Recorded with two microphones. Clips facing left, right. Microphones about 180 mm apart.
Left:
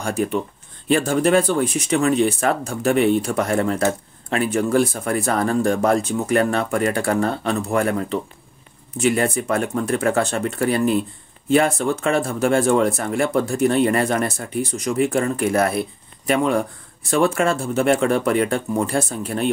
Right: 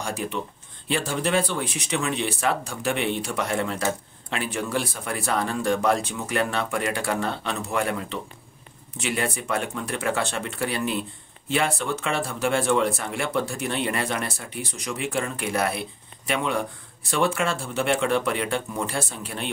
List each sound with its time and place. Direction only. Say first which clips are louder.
0.0 s speech: left 7 dB; 50° left (ahead or behind)